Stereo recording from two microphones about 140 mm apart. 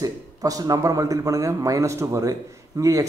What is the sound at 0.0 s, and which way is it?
Speech, 25° right (ahead or behind).